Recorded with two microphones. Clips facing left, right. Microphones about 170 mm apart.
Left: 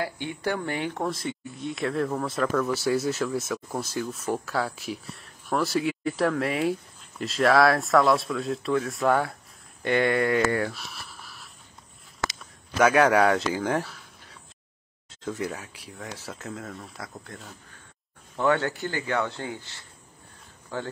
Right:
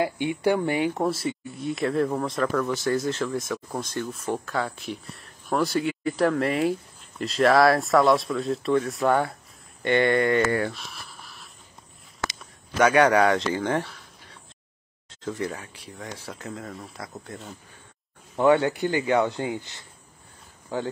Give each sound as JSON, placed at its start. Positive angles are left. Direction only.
{"t": 0.0, "sound": "speech", "side_deg": -15}
{"t": 12.3, "sound": "a sound", "side_deg": 0}
{"t": 15.3, "sound": "speech", "side_deg": 5}
{"t": 18.4, "sound": "speech", "side_deg": -15}